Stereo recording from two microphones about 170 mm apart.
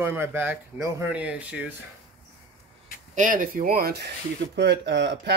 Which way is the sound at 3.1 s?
50° right (ahead or behind).